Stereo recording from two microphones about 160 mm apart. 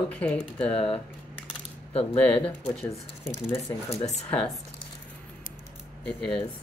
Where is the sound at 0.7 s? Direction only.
35° left (ahead or behind).